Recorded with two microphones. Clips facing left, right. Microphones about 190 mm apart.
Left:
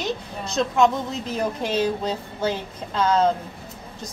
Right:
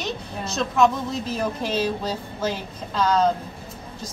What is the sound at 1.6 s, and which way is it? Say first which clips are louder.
A woman's voice: left 1 dB; 20° left (ahead or behind).